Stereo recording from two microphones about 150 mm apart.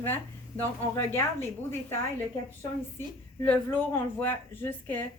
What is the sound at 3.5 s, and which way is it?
A woman's voice, 10° left (ahead or behind).